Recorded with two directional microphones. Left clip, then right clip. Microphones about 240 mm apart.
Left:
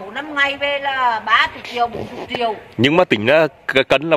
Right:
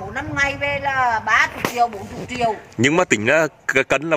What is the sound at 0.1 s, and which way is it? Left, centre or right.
A man's voice, centre.